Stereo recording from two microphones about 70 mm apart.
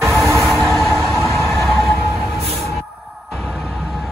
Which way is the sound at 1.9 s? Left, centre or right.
Right.